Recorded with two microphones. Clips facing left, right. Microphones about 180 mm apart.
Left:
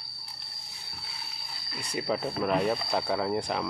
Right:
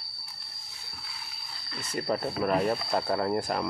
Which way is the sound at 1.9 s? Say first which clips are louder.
Even; centre (ahead or behind).